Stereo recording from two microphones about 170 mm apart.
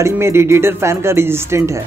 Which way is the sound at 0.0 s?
15° right (ahead or behind).